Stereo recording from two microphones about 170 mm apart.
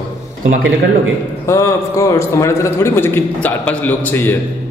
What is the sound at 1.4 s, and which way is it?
A man's voice, 20° left (ahead or behind).